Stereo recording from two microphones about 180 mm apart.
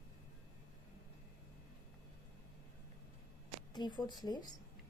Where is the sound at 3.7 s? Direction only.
25° left (ahead or behind).